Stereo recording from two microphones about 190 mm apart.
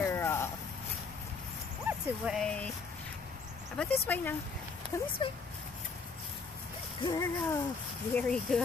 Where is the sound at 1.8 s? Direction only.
5° right (ahead or behind).